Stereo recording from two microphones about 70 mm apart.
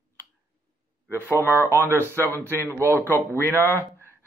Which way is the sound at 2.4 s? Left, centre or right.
Right.